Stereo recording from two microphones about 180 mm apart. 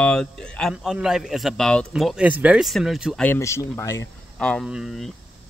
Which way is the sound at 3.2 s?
15° left (ahead or behind).